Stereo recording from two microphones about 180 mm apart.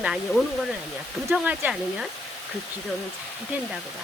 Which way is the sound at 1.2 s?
5° right (ahead or behind).